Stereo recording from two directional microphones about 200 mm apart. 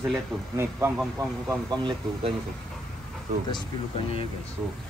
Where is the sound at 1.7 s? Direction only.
25° right (ahead or behind).